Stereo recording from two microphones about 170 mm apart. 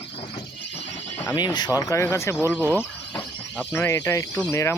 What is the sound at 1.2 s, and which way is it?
Speech, 25° left (ahead or behind).